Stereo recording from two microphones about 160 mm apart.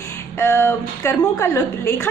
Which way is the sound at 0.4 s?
15° left (ahead or behind).